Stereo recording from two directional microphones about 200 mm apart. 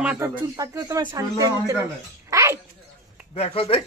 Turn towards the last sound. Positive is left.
turn(degrees=30)  # may be behind; listen again after turning